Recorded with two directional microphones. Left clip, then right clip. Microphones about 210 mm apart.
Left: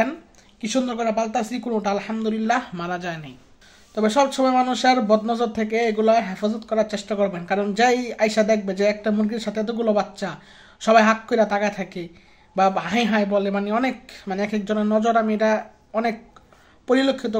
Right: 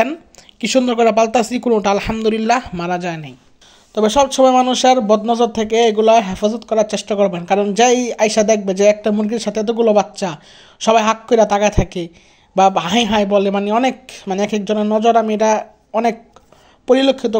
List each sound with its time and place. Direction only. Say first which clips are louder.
0.6 s speech: right 10 dB; 45° right (ahead or behind)
2.7 s speech: right 7 dB; 35° right (ahead or behind)